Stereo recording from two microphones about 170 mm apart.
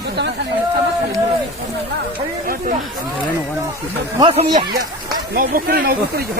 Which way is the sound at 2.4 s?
55° right (ahead or behind).